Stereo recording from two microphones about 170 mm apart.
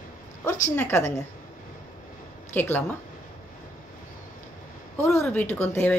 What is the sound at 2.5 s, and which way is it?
Speech, 10° left (ahead or behind).